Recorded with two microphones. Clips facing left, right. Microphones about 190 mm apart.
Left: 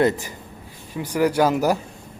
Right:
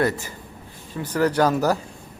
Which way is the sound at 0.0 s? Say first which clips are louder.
Left 3 dB; 20° left (ahead or behind).